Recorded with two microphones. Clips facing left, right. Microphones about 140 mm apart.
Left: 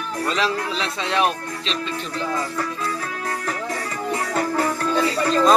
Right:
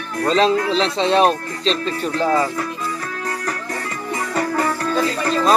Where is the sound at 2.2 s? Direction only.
75° right (ahead or behind).